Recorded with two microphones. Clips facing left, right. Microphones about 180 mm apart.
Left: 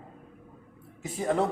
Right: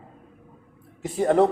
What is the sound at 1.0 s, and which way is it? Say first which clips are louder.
Speech: right 8 dB; 60° right (ahead or behind).